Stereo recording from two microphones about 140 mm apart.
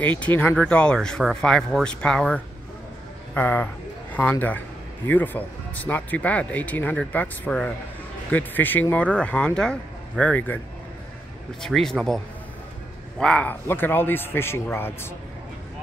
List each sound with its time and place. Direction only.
0.0 s a man's voice: 10° left (ahead or behind)
11.6 s speech: 5° left (ahead or behind)
13.2 s a man's voice: 10° left (ahead or behind)